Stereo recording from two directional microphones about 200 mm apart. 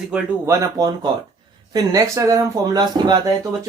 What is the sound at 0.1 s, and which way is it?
Speech, 15° right (ahead or behind).